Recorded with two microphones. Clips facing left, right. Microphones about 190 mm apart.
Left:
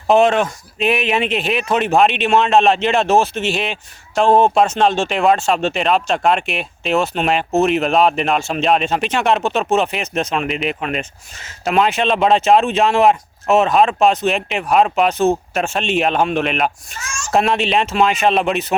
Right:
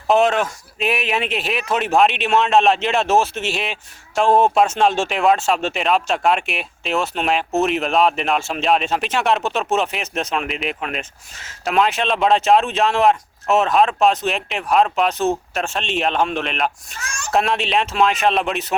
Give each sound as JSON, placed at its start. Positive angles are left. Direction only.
{"t": 0.1, "sound": "speech", "side_deg": 0}
{"t": 17.0, "sound": "a child's voice", "side_deg": -60}
{"t": 17.3, "sound": "speech", "side_deg": 0}